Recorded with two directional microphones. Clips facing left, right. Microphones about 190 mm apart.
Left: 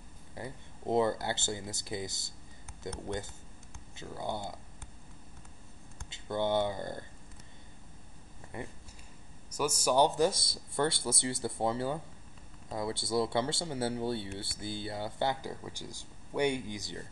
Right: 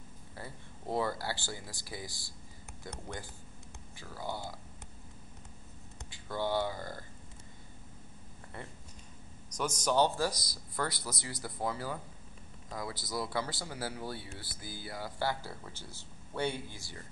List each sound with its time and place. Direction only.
0.4 s speech: 20° left (ahead or behind)
6.0 s speech: 25° left (ahead or behind)
8.5 s speech: 15° left (ahead or behind)